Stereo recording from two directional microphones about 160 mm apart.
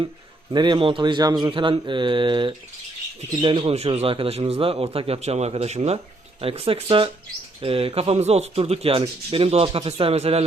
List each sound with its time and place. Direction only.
0.5 s speech: 30° right (ahead or behind)